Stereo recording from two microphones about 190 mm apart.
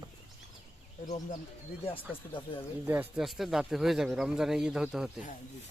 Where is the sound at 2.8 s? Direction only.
10° right (ahead or behind).